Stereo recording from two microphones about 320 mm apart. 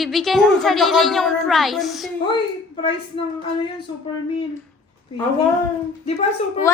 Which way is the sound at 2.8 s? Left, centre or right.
Centre.